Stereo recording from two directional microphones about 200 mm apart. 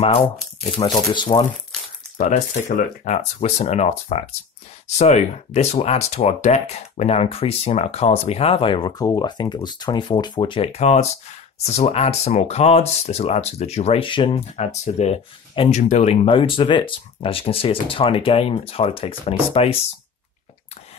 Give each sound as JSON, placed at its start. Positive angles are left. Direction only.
{"t": 0.7, "sound": "speech", "side_deg": 25}
{"t": 2.1, "sound": "speech", "side_deg": 40}